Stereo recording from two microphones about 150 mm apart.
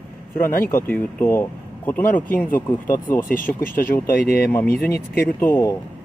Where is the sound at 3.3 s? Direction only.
70° left (ahead or behind).